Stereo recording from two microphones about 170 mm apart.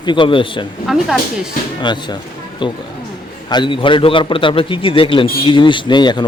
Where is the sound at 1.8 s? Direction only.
25° left (ahead or behind).